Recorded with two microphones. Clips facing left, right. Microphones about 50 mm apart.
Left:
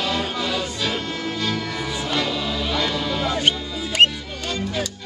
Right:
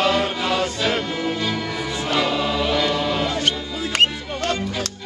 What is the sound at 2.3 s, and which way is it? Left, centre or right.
Music, right.